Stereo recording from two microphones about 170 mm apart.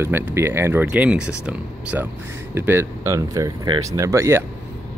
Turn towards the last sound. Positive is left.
turn(degrees=-15)  # may be behind; listen again after turning